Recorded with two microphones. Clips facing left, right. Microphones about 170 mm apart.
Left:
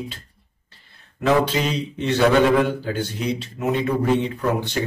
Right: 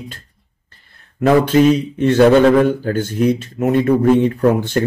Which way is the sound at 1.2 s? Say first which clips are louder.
Right 8 dB; 50° right (ahead or behind).